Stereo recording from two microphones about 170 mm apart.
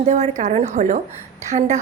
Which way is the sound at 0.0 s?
45° right (ahead or behind).